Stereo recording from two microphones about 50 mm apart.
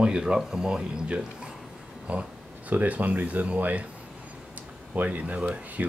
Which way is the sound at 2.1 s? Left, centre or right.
Right.